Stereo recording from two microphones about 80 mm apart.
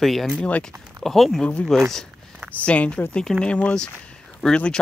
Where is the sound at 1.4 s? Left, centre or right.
Centre.